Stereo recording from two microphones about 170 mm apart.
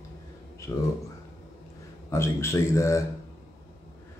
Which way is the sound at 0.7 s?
20° left (ahead or behind).